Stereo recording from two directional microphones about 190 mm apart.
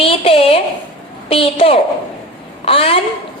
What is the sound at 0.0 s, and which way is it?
A woman's voice, 30° left (ahead or behind).